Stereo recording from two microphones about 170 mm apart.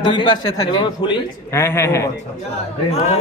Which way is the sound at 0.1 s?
25° left (ahead or behind).